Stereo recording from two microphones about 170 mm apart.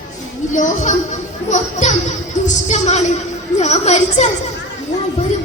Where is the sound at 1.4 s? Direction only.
45° left (ahead or behind).